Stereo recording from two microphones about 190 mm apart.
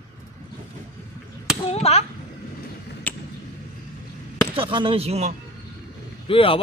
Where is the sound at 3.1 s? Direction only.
10° left (ahead or behind).